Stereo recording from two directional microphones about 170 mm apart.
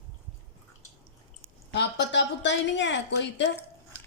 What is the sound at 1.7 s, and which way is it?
A woman's voice, 90° left.